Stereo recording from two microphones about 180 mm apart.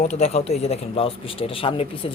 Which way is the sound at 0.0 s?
35° left (ahead or behind).